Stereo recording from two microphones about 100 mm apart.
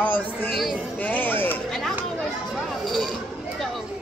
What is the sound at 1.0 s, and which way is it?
Chatter, 20° left (ahead or behind).